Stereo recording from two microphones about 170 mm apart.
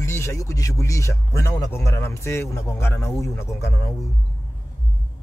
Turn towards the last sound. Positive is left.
turn(degrees=15)  # may be behind; listen again after turning